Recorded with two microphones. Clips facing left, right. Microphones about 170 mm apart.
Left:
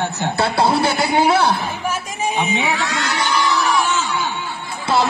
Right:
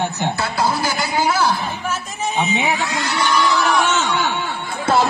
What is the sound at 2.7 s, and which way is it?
Music, 85° left.